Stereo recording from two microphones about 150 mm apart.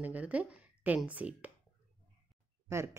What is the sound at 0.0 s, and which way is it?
A woman's voice, 10° right (ahead or behind).